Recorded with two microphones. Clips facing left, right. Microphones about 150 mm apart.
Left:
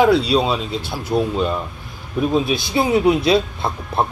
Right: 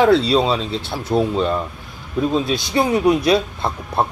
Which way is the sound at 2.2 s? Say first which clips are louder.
Left 1 dB; 15° left (ahead or behind).